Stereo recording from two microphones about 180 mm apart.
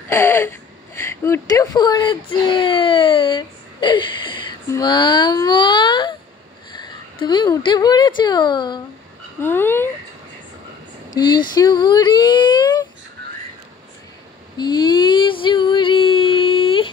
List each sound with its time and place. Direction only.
0.1 s speech: 15° left (ahead or behind)
9.4 s speech: 10° left (ahead or behind)
11.1 s speech: 25° left (ahead or behind)
14.6 s a sound: 25° left (ahead or behind)